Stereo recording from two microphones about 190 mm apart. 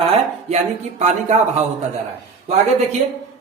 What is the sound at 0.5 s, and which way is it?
Speech, 40° right (ahead or behind).